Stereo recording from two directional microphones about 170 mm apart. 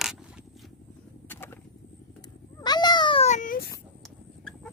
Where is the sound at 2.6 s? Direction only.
25° left (ahead or behind); by 3.6 s 50° left (ahead or behind).